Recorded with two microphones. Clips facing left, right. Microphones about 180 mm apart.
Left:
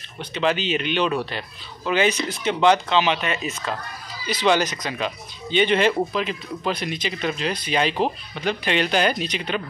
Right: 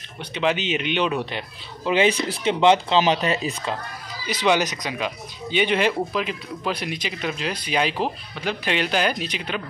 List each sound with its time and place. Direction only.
0.2 s speech: 15° right (ahead or behind)
3.0 s speech: 35° right (ahead or behind)
4.3 s speech: 15° right (ahead or behind)